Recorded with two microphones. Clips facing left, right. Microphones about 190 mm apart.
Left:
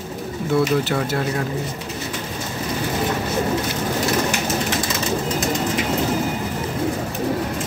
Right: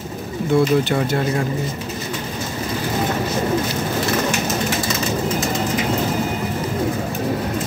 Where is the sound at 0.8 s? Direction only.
Centre (ahead or behind).